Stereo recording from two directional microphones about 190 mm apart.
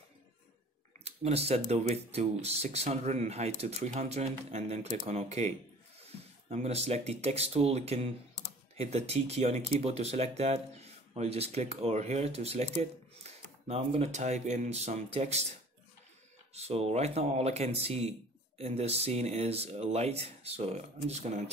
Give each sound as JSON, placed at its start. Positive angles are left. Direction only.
{"t": 1.0, "sound": "speech", "side_deg": -35}
{"t": 16.5, "sound": "speech", "side_deg": -35}